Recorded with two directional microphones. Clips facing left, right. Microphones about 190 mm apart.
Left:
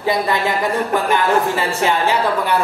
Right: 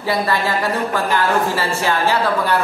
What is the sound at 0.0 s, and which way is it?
Speech, 20° left (ahead or behind).